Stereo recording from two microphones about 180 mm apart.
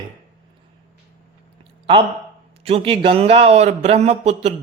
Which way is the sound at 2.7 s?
30° right (ahead or behind).